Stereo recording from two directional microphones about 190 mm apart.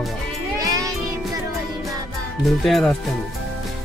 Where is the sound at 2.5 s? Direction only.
Centre (ahead or behind).